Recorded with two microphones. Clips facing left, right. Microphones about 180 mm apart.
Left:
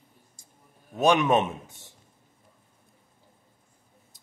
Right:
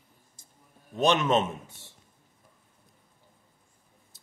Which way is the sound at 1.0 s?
10° left (ahead or behind).